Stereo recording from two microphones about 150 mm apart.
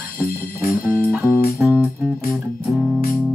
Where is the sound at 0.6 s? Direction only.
5° right (ahead or behind).